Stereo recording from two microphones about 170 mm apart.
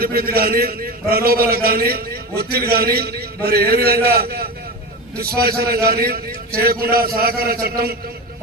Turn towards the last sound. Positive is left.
turn(degrees=-60)  # may be behind; listen again after turning